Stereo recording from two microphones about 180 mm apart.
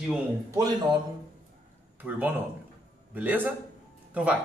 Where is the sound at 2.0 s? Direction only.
5° right (ahead or behind).